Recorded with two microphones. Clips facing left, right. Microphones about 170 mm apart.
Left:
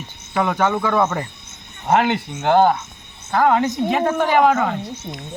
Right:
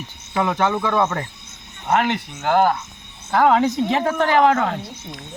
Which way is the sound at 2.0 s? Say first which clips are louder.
Left 2 dB; 30° left (ahead or behind).